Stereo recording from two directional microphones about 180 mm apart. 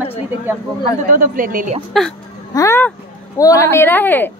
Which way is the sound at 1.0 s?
50° right (ahead or behind).